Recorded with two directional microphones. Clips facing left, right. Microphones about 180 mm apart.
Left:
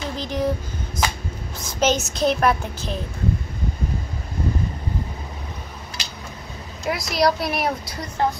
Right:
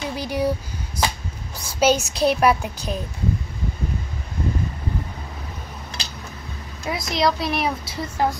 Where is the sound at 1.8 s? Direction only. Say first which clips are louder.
Right 2 dB; 10° right (ahead or behind).